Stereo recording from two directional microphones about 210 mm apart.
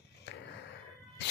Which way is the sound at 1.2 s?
55° left (ahead or behind).